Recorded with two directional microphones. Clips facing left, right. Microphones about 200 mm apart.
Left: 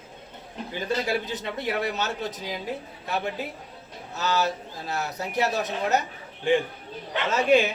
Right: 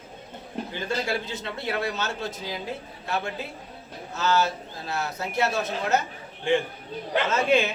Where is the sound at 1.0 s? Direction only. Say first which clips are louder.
Left 2 dB; 15° left (ahead or behind).